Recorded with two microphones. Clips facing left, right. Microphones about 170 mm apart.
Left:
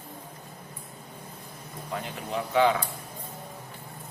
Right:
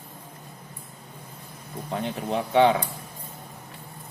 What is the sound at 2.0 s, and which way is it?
Speech, 30° right (ahead or behind).